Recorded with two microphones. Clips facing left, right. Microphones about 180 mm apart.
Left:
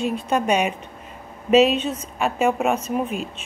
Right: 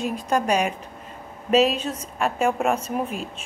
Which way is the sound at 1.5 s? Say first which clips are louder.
Left 3 dB; 35° right (ahead or behind).